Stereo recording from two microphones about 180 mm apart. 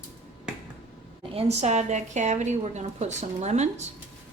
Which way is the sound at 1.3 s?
40° right (ahead or behind).